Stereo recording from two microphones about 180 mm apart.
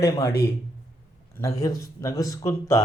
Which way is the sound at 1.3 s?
15° left (ahead or behind).